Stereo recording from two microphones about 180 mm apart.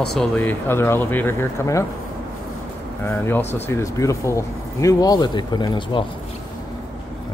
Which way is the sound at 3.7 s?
15° left (ahead or behind).